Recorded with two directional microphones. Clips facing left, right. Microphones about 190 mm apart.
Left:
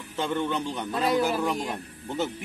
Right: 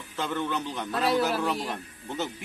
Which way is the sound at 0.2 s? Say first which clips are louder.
Left 2 dB; 25° left (ahead or behind).